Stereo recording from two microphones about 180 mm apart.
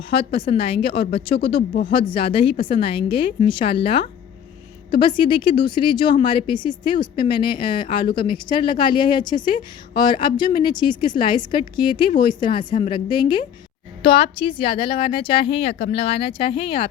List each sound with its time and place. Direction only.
0.1 s speech: 30° left (ahead or behind)